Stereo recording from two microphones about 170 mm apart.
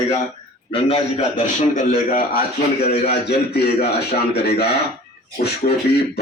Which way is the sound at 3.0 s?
70° left (ahead or behind).